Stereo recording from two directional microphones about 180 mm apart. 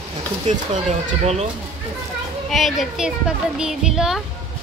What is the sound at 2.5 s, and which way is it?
A child's voice, centre (ahead or behind).